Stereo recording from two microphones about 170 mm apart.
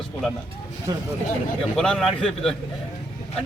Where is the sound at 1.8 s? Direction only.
5° left (ahead or behind).